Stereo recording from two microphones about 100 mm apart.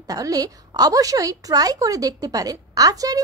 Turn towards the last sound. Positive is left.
turn(degrees=-35)  # may be behind; listen again after turning